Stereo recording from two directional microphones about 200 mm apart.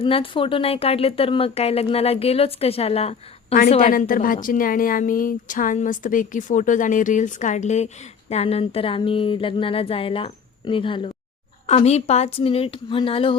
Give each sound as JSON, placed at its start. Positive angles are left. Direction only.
{"t": 0.0, "sound": "speech", "side_deg": 25}
{"t": 3.9, "sound": "speech", "side_deg": 45}